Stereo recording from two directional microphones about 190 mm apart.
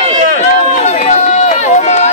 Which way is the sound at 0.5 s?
40° left (ahead or behind).